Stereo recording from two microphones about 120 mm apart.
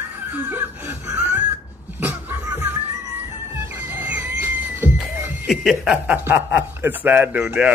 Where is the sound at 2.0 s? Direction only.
15° right (ahead or behind).